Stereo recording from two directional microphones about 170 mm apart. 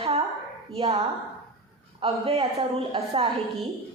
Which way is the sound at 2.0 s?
35° right (ahead or behind).